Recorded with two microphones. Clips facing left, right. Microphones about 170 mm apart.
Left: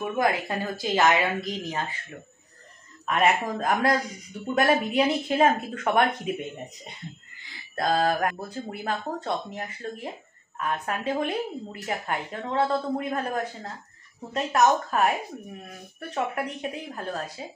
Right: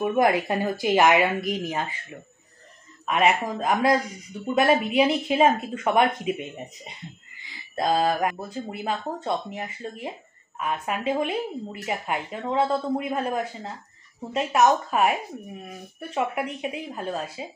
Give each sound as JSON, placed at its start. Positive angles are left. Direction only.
{"t": 0.0, "sound": "speech", "side_deg": -20}
{"t": 7.7, "sound": "speech", "side_deg": -5}